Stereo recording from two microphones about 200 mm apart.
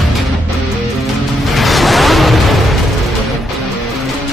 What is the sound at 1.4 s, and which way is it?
Music, centre (ahead or behind).